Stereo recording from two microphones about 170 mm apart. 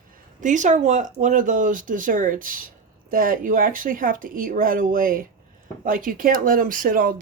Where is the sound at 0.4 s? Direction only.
45° right (ahead or behind).